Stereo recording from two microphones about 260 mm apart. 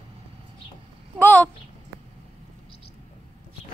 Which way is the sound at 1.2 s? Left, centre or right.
Centre.